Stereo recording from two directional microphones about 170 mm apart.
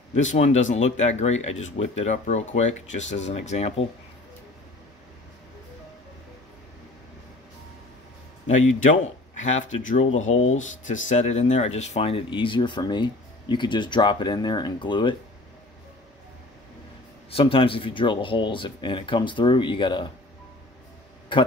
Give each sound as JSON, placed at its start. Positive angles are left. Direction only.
{"t": 0.1, "sound": "speech", "side_deg": 45}
{"t": 8.5, "sound": "speech", "side_deg": 45}
{"t": 17.3, "sound": "speech", "side_deg": 35}
{"t": 21.3, "sound": "speech", "side_deg": 30}